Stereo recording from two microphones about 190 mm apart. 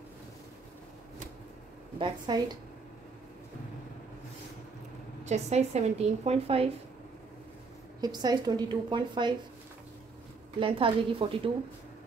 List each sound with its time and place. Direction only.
2.0 s a woman's voice: 20° right (ahead or behind)
5.2 s a woman's voice: 35° right (ahead or behind)
8.0 s a woman's voice: 20° right (ahead or behind)
10.6 s a woman's voice: 30° right (ahead or behind)